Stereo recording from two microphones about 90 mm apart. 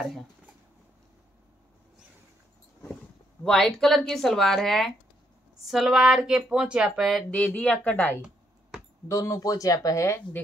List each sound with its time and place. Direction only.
3.4 s speech: 5° left (ahead or behind)
7.2 s speech: 10° left (ahead or behind)
9.0 s speech: 35° left (ahead or behind)